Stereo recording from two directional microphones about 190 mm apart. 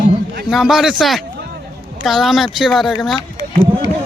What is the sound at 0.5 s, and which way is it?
Speech, centre (ahead or behind).